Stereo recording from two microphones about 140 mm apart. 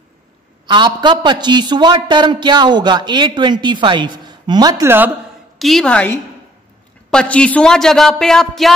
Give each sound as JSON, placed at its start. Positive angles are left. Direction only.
{"t": 0.7, "sound": "a man's voice", "side_deg": -35}
{"t": 4.8, "sound": "speech", "side_deg": -15}
{"t": 5.6, "sound": "a man's voice", "side_deg": 0}